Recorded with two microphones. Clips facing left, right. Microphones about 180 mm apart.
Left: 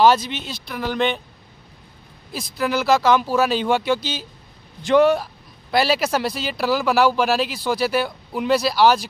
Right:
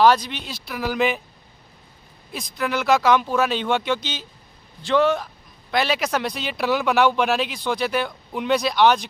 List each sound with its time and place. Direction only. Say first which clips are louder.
0.0 s speech: left 1 dB; 25° left (ahead or behind)
0.5 s speech: right 1 dB; centre (ahead or behind)
2.3 s speech: left 3 dB; 5° left (ahead or behind)
5.7 s speech: left 3 dB; 35° left (ahead or behind)
5.9 s speech: left 2 dB; 5° left (ahead or behind)